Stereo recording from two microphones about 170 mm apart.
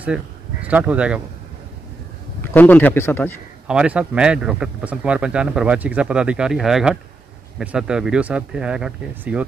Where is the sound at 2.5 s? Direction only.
10° left (ahead or behind).